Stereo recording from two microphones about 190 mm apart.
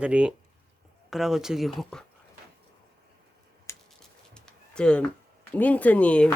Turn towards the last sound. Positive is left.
turn(degrees=5)  # may be behind; listen again after turning